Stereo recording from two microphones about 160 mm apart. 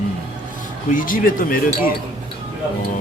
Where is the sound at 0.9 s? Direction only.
60° left (ahead or behind).